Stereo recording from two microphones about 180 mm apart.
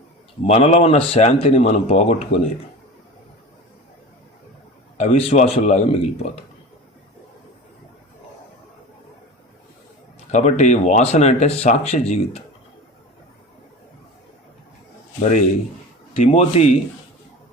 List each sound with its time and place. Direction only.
0.4 s speech: 35° left (ahead or behind)
4.9 s speech: 35° left (ahead or behind)
10.3 s speech: 40° left (ahead or behind)
15.2 s a man's voice: 45° left (ahead or behind)